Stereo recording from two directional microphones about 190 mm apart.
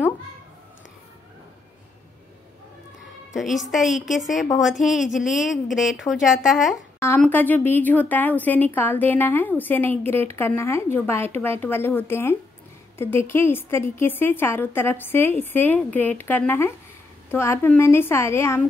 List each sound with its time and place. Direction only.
3.3 s a woman's voice: centre (ahead or behind)
7.0 s a woman's voice: 10° left (ahead or behind)